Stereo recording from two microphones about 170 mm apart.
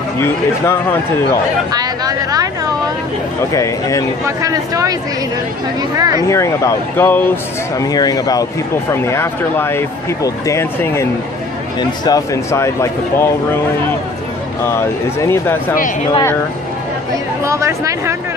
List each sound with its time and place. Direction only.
0.2 s speech: 15° left (ahead or behind)
1.7 s speech: 25° right (ahead or behind)
3.5 s speech: 20° left (ahead or behind)
4.4 s speech: 20° right (ahead or behind)
5.9 s speech: 20° right (ahead or behind)
6.2 s speech: 15° left (ahead or behind)
7.8 s speech: 20° left (ahead or behind)
14.6 s speech: 15° left (ahead or behind)
17.5 s speech: 15° right (ahead or behind)